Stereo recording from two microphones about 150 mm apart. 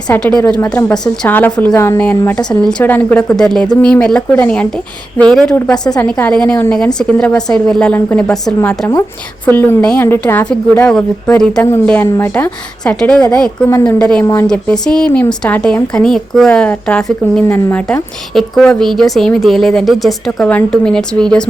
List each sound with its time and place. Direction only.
0.1 s a woman's voice: 5° left (ahead or behind)
13.7 s a woman's voice: 15° left (ahead or behind)
14.0 s a woman's voice: 5° left (ahead or behind)